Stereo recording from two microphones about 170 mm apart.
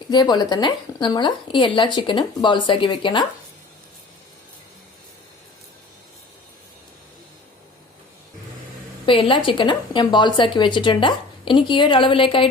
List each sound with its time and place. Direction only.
0.1 s speech: 25° left (ahead or behind)
9.0 s speech: 30° left (ahead or behind)